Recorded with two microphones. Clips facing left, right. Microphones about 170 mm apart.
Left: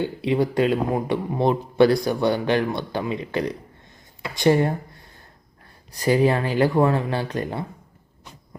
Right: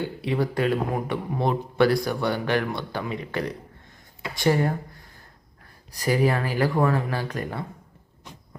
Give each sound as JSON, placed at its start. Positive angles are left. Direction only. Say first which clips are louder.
{"t": 0.0, "sound": "a man's voice", "louder": "left 4 dB", "side_deg": 20}
{"t": 6.0, "sound": "a man's voice", "louder": "left 4 dB", "side_deg": 25}